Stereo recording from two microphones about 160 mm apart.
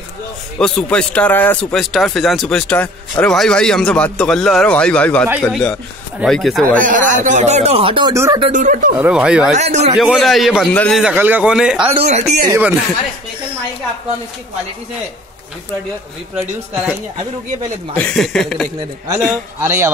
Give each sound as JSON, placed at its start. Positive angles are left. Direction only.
{"t": 0.6, "sound": "speech", "side_deg": 5}
{"t": 6.7, "sound": "a man's voice", "side_deg": -55}
{"t": 8.1, "sound": "speech", "side_deg": -20}
{"t": 8.5, "sound": "speech", "side_deg": -50}
{"t": 8.9, "sound": "speech", "side_deg": -5}
{"t": 9.5, "sound": "speech", "side_deg": -45}
{"t": 9.9, "sound": "a man's voice", "side_deg": 0}
{"t": 11.0, "sound": "a man's voice", "side_deg": -10}
{"t": 11.8, "sound": "speech", "side_deg": -35}
{"t": 12.4, "sound": "a man's voice", "side_deg": -15}
{"t": 17.9, "sound": "speech", "side_deg": 5}
{"t": 19.6, "sound": "a man's voice", "side_deg": -15}